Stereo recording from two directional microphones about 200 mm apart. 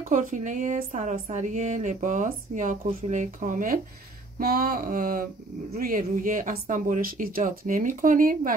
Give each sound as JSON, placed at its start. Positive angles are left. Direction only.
{"t": 0.1, "sound": "a woman's voice", "side_deg": -40}